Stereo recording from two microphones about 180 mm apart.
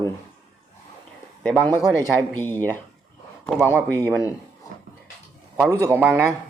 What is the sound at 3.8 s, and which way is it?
Speech, 10° left (ahead or behind).